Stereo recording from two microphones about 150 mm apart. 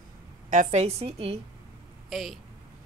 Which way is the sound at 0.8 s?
40° right (ahead or behind).